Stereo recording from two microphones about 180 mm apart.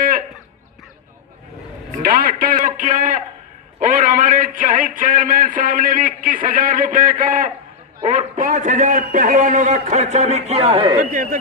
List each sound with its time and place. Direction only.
2.0 s a man's voice: 55° right (ahead or behind); by 11.0 s 30° right (ahead or behind)
11.0 s a man's voice: 50° right (ahead or behind)